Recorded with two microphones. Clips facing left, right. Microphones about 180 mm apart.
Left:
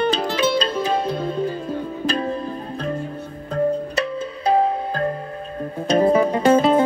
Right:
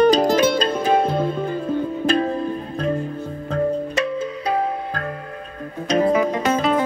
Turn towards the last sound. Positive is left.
turn(degrees=30)  # may be behind; listen again after turning